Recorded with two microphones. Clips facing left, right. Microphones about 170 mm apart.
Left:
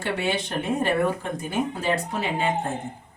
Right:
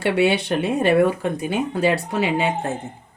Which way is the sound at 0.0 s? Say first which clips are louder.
Right 8 dB; 70° right (ahead or behind).